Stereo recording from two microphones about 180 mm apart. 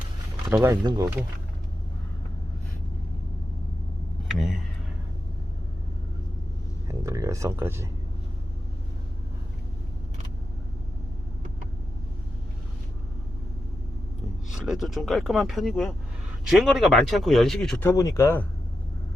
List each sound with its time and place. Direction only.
0.5 s speech: 15° right (ahead or behind)
6.8 s a sound: 15° right (ahead or behind)
14.5 s speech: centre (ahead or behind); by 18.4 s 15° left (ahead or behind)